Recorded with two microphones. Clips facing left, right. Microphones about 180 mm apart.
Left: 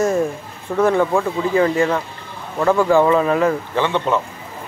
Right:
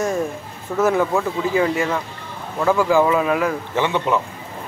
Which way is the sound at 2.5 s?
Centre (ahead or behind).